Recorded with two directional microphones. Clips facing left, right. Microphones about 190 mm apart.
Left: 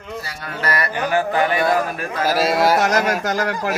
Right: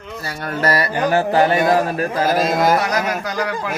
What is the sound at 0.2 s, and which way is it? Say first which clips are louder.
Music: right 8 dB; 55° right (ahead or behind).